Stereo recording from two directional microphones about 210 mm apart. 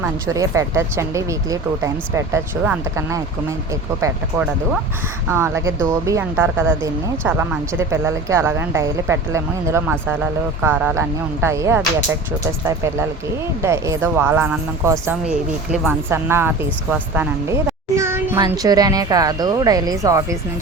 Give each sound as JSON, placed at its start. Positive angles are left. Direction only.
{"t": 0.0, "sound": "speech", "side_deg": -15}